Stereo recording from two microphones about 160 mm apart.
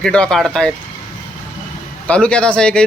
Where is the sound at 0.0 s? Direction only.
5° left (ahead or behind).